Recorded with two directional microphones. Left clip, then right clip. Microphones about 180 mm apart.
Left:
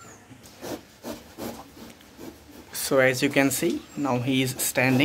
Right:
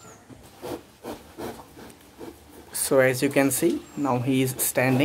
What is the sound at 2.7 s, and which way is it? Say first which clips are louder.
Speech: right 1 dB; 5° right (ahead or behind).